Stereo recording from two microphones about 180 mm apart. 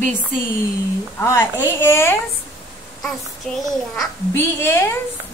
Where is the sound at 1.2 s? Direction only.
15° left (ahead or behind).